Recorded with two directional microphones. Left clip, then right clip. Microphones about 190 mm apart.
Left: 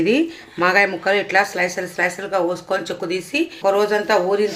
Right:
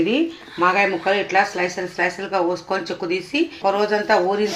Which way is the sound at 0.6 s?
30° left (ahead or behind).